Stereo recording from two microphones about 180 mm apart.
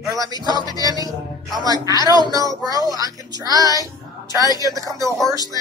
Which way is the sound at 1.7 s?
20° left (ahead or behind).